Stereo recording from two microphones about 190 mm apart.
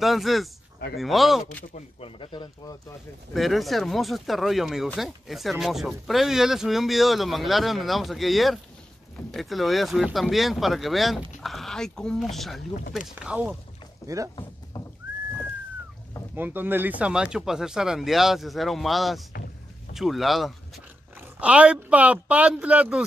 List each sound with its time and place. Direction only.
0.0 s speech: centre (ahead or behind)
1.7 s speech: 30° left (ahead or behind)
3.3 s speech: centre (ahead or behind)
14.0 s speech: 15° right (ahead or behind)
16.3 s speech: 10° right (ahead or behind)